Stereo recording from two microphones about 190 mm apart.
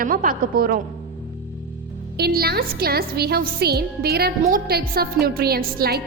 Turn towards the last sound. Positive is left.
turn(degrees=-55)  # may be behind; listen again after turning